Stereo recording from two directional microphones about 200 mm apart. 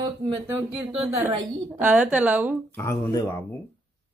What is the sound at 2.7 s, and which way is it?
Speech, 15° left (ahead or behind).